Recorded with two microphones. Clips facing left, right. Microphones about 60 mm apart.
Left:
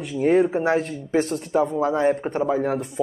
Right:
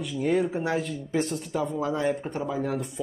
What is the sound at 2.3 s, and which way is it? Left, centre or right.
Speech, left.